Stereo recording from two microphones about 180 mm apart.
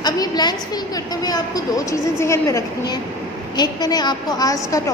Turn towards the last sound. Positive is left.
turn(degrees=20)  # may be behind; listen again after turning